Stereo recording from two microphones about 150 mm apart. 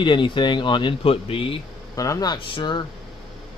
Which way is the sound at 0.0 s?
35° left (ahead or behind).